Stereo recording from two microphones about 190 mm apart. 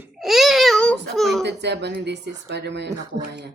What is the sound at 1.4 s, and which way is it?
Speech, 65° right (ahead or behind).